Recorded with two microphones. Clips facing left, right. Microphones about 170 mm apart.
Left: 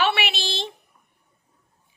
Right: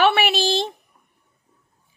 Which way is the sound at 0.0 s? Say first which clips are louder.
Right 6 dB; 45° right (ahead or behind).